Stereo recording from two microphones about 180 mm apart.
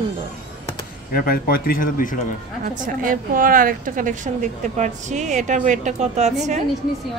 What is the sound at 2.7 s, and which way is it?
A woman's voice, 50° right (ahead or behind).